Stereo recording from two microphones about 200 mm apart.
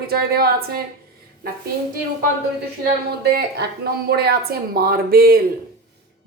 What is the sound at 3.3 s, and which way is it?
Speech, 50° right (ahead or behind).